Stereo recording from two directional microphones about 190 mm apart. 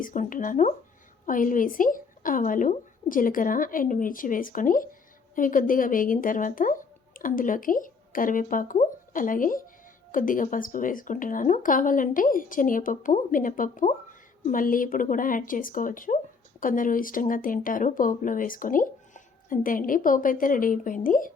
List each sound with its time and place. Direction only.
0.0 s speech: 45° left (ahead or behind)